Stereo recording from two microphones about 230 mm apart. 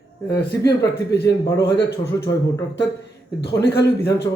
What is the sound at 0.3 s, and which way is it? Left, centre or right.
A man's voice, left.